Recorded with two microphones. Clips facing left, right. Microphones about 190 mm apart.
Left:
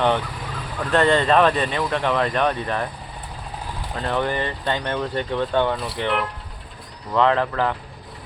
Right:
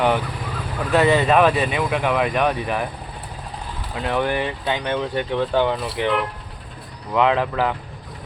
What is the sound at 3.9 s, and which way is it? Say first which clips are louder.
Speech: right 2 dB; 5° right (ahead or behind).